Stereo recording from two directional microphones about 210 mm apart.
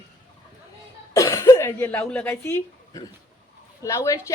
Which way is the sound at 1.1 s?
15° left (ahead or behind).